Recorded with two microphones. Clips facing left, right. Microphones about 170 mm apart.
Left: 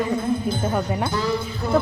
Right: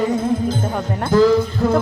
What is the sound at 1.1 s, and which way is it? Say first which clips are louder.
Speech: right 11 dB; 90° right.